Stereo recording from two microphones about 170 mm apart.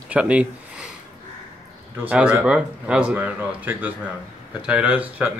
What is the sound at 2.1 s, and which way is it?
Speech, 5° right (ahead or behind).